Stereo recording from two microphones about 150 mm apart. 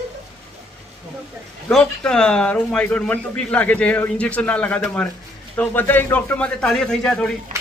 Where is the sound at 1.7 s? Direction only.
5° left (ahead or behind).